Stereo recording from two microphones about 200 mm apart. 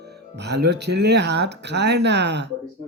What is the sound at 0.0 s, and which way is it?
Speech, 55° right (ahead or behind).